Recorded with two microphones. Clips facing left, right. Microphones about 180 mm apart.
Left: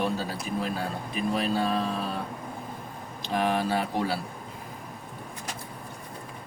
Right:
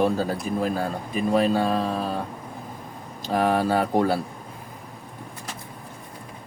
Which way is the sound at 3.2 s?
45° right (ahead or behind).